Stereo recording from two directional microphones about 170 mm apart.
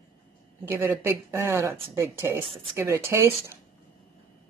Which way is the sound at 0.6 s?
15° right (ahead or behind).